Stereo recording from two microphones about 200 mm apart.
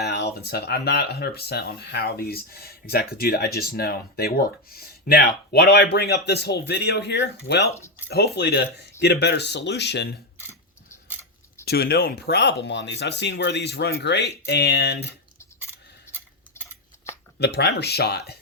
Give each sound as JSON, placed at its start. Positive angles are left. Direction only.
{"t": 0.0, "sound": "speech", "side_deg": 55}
{"t": 11.6, "sound": "speech", "side_deg": 50}
{"t": 17.4, "sound": "speech", "side_deg": 55}